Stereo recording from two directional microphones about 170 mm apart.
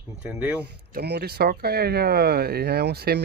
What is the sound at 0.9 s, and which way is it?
Speech, 75° right (ahead or behind).